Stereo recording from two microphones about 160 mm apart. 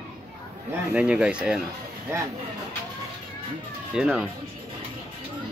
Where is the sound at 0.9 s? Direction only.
5° right (ahead or behind).